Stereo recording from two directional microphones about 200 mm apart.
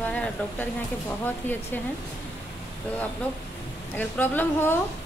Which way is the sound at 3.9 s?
10° left (ahead or behind).